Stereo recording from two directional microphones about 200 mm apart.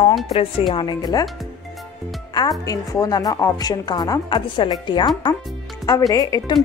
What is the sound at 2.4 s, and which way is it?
A woman's voice, 20° left (ahead or behind).